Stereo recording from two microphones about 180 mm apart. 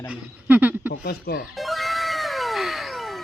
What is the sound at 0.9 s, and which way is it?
Speech, 60° left (ahead or behind).